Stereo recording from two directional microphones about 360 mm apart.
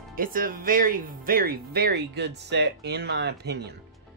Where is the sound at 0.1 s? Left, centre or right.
Right.